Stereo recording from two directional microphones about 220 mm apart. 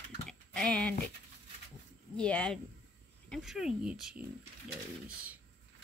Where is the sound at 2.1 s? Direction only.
5° left (ahead or behind).